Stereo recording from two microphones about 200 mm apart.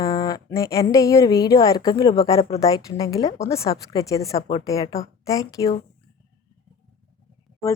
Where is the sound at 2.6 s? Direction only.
15° left (ahead or behind).